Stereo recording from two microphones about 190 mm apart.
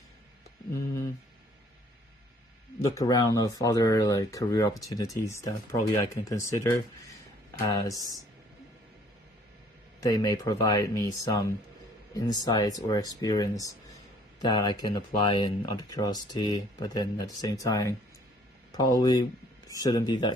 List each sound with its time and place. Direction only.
2.8 s speech: 15° left (ahead or behind)
9.9 s speech: 20° left (ahead or behind)